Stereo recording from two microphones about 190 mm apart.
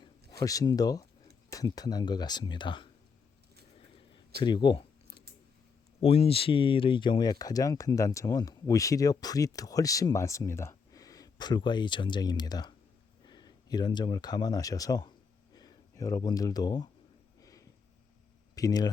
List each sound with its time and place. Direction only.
0.0 s speech: 20° left (ahead or behind)
4.4 s computer keyboard: 25° left (ahead or behind)
6.0 s speech: 30° left (ahead or behind)
17.4 s a sound: 15° left (ahead or behind)
18.5 s speech: 20° left (ahead or behind)